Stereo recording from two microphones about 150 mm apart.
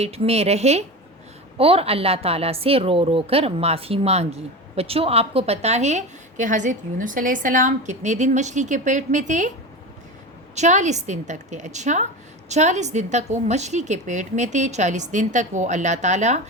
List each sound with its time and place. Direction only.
0.0 s a woman's voice: 45° right (ahead or behind)
10.5 s a woman's voice: 50° right (ahead or behind)